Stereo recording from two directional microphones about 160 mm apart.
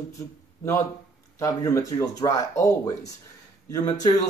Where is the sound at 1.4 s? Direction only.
20° left (ahead or behind).